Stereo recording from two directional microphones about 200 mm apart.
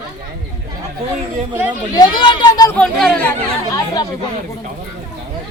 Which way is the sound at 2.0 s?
25° left (ahead or behind).